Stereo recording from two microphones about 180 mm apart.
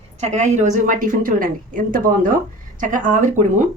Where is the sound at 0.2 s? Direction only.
40° right (ahead or behind).